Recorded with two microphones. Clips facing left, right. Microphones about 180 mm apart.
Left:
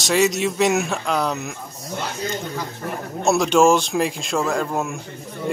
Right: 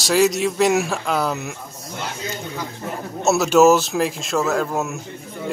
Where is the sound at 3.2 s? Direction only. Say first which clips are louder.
Right 2 dB; 5° right (ahead or behind).